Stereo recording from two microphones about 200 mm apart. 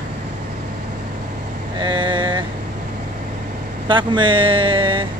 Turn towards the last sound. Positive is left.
turn(degrees=-25)  # may be behind; listen again after turning